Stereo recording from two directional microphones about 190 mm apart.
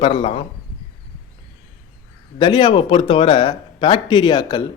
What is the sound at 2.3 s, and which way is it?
Speech, 25° left (ahead or behind).